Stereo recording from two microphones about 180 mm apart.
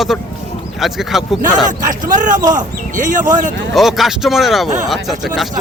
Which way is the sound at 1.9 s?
45° right (ahead or behind).